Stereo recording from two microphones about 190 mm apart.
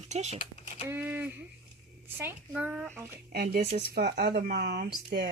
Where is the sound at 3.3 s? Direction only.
50° right (ahead or behind).